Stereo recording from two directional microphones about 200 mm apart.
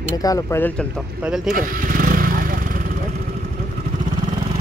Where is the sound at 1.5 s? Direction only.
45° right (ahead or behind).